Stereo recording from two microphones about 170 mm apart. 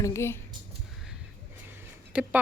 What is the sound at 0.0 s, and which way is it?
Speech, 15° left (ahead or behind).